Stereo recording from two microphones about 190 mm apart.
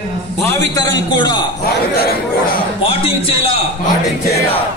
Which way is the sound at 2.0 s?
50° left (ahead or behind).